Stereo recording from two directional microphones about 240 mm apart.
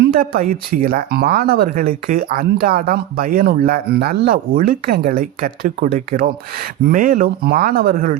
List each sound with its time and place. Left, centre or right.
0.0 s speech: right